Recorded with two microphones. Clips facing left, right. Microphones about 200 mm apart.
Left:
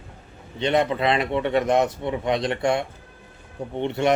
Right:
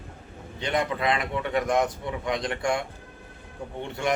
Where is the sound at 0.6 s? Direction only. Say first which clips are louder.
Left 5 dB; 25° left (ahead or behind).